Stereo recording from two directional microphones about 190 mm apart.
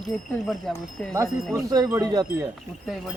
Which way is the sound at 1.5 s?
20° right (ahead or behind).